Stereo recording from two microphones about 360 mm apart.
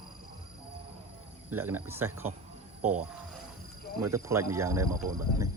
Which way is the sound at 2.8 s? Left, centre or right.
Right.